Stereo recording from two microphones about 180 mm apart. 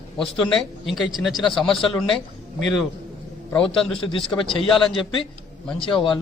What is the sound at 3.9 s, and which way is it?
Speech, 30° left (ahead or behind).